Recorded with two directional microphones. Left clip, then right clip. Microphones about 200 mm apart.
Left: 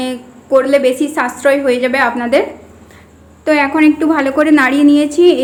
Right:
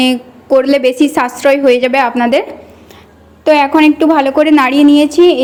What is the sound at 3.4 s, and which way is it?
A woman's voice, 25° right (ahead or behind).